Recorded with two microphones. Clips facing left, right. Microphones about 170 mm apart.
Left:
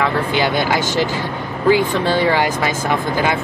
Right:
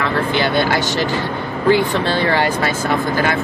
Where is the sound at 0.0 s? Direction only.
15° left (ahead or behind).